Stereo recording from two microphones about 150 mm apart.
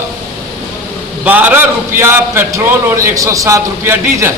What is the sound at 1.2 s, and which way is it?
A man's voice, 10° right (ahead or behind).